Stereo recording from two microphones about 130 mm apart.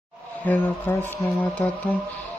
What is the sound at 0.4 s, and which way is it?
Speech, 15° left (ahead or behind).